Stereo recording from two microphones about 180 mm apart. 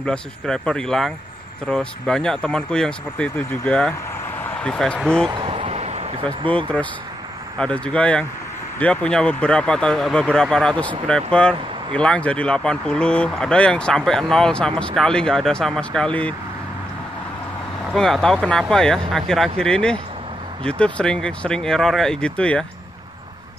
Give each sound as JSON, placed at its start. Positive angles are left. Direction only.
{"t": 0.0, "sound": "speech", "side_deg": 5}
{"t": 5.4, "sound": "a sound", "side_deg": -35}
{"t": 6.5, "sound": "speech", "side_deg": 5}
{"t": 17.9, "sound": "speech", "side_deg": 5}